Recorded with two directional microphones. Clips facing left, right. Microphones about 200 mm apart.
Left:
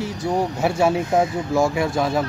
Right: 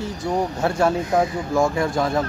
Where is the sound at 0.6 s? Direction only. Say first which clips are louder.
Left 1 dB; 10° left (ahead or behind).